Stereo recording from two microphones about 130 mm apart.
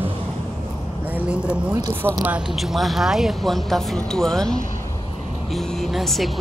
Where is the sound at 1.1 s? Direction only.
10° right (ahead or behind).